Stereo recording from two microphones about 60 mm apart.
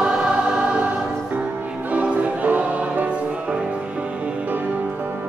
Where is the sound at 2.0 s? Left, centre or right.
Right.